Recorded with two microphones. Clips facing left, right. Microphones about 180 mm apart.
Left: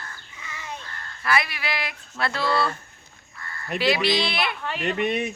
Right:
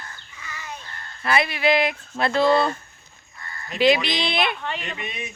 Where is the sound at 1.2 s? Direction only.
25° right (ahead or behind).